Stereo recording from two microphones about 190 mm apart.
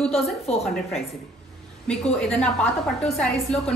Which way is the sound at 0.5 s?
5° left (ahead or behind).